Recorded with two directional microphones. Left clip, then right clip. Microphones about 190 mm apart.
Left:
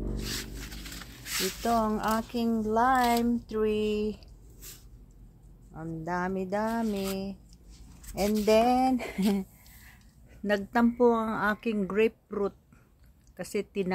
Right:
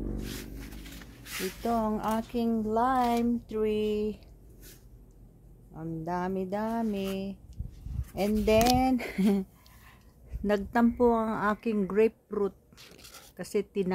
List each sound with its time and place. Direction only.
0.4 s a sound: 65° left (ahead or behind)
1.6 s a woman's voice: 10° left (ahead or behind)
5.7 s a woman's voice: centre (ahead or behind)
8.1 s a woman's voice: 10° right (ahead or behind)